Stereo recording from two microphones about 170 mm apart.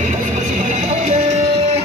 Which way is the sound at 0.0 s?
45° right (ahead or behind).